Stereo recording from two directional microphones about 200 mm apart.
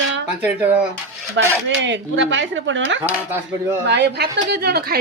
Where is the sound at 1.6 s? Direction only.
65° right (ahead or behind).